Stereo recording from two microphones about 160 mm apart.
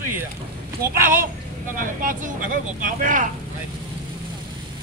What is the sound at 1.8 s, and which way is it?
Speech, 60° right (ahead or behind).